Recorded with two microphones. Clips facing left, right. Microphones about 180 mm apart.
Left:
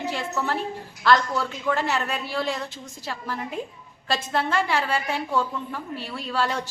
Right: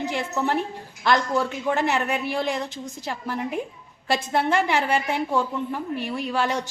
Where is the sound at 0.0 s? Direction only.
15° right (ahead or behind).